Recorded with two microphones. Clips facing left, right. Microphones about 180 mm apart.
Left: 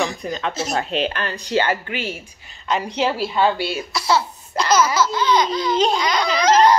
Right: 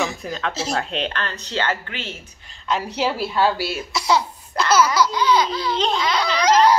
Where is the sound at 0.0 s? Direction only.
5° right (ahead or behind).